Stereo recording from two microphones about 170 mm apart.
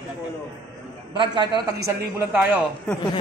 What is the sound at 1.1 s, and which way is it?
Speech, 25° right (ahead or behind).